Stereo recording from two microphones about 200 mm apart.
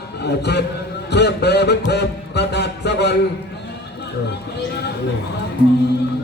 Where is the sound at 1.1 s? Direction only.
55° left (ahead or behind).